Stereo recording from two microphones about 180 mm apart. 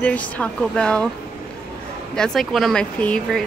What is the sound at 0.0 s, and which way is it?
Speech, 5° left (ahead or behind).